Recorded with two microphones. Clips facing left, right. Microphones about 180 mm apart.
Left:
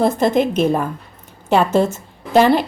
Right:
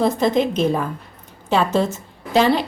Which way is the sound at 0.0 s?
55° left (ahead or behind).